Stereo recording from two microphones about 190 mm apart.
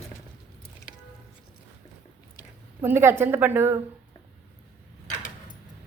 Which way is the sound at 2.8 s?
15° right (ahead or behind).